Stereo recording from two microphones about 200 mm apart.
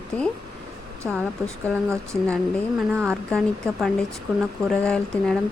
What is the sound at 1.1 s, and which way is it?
Speech, centre (ahead or behind).